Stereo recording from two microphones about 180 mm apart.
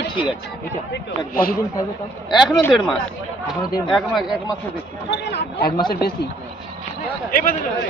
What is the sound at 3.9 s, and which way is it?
Speech, centre (ahead or behind).